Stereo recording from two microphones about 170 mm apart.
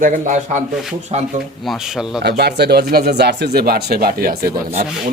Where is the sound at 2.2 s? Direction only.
75° right (ahead or behind).